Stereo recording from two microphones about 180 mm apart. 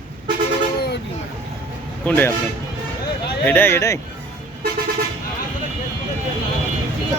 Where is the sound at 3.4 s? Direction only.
10° left (ahead or behind).